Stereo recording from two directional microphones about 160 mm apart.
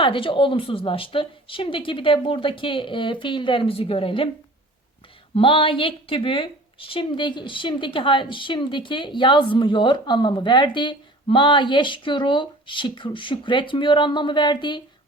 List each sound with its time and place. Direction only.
0.0 s a woman's voice: 30° left (ahead or behind)
5.3 s a woman's voice: 35° left (ahead or behind)